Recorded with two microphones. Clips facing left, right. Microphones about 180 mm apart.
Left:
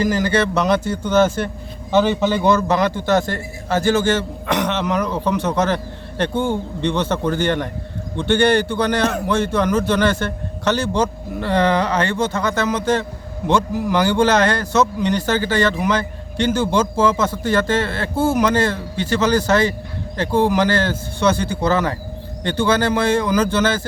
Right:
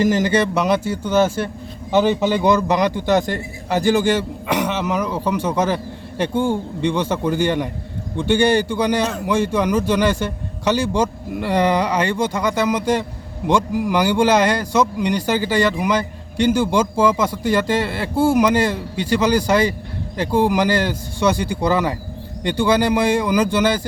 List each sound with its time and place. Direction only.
0.0 s speech: 20° right (ahead or behind)